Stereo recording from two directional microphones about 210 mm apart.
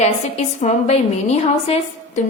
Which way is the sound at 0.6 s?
30° left (ahead or behind).